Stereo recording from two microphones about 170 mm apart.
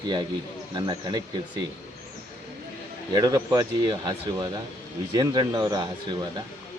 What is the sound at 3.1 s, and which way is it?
Speech, 25° right (ahead or behind).